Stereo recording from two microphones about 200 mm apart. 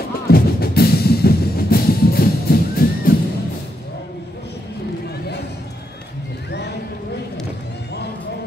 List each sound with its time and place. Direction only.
0.3 s music: 50° left (ahead or behind)